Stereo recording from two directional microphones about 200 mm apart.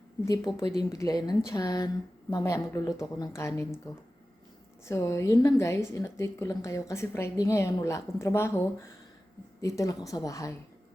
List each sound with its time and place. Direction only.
0.3 s a woman's voice: 15° left (ahead or behind)
4.9 s a woman's voice: 15° left (ahead or behind)